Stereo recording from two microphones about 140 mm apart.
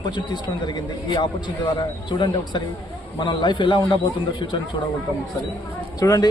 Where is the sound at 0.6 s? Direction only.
35° left (ahead or behind).